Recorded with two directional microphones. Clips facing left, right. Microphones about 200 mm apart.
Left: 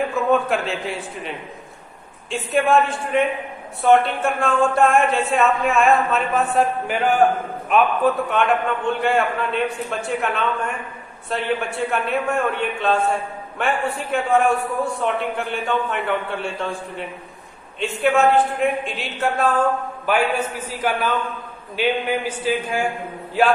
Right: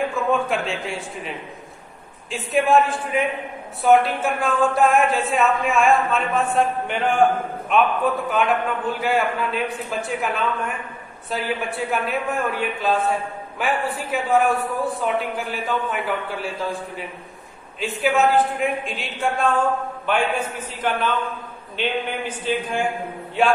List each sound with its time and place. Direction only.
0.3 s speech: centre (ahead or behind)
2.3 s a man's voice: centre (ahead or behind)